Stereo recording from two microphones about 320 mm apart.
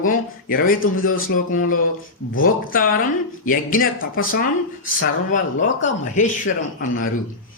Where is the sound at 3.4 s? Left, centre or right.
Left.